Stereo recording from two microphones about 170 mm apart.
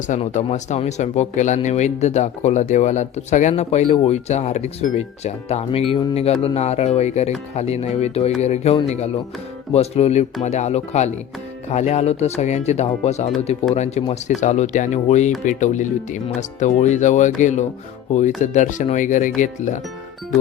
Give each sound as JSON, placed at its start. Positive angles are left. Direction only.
{"t": 0.1, "sound": "speech", "side_deg": 45}